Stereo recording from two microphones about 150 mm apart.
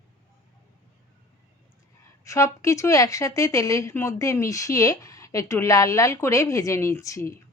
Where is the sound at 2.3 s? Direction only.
20° left (ahead or behind).